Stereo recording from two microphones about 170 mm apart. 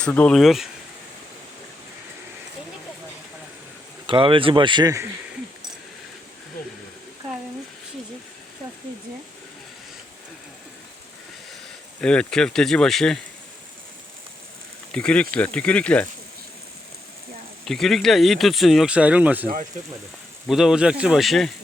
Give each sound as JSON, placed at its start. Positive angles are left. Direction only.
{"t": 0.0, "sound": "speech", "side_deg": 5}
{"t": 4.0, "sound": "speech", "side_deg": -30}
{"t": 11.9, "sound": "speech", "side_deg": 5}
{"t": 14.9, "sound": "speech", "side_deg": 5}
{"t": 17.7, "sound": "speech", "side_deg": 0}
{"t": 20.5, "sound": "speech", "side_deg": 0}